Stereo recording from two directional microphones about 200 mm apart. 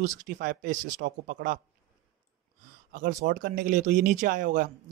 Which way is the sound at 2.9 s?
40° right (ahead or behind).